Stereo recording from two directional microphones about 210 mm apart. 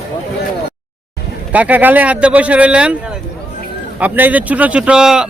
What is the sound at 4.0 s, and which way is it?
Speech, 10° right (ahead or behind).